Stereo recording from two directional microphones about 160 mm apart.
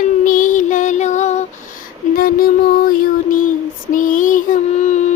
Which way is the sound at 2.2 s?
65° left (ahead or behind).